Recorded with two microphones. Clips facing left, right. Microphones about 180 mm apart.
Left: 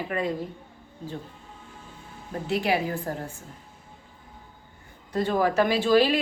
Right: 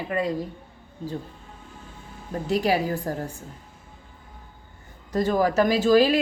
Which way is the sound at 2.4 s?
40° right (ahead or behind).